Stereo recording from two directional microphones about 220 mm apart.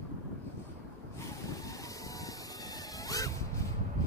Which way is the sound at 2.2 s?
15° left (ahead or behind).